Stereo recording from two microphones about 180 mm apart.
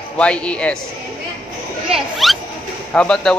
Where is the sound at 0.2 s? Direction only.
5° left (ahead or behind).